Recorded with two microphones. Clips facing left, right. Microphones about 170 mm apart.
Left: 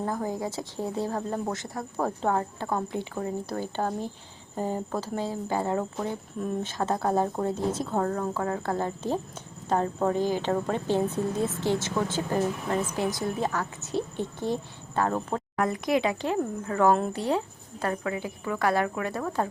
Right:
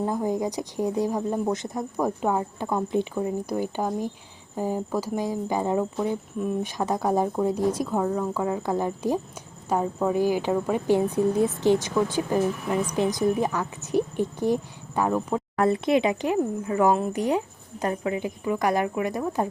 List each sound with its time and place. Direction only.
0.0 s speech: 20° right (ahead or behind)
15.6 s speech: 25° right (ahead or behind)